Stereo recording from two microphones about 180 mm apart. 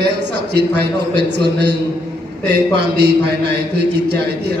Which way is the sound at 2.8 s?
65° right (ahead or behind).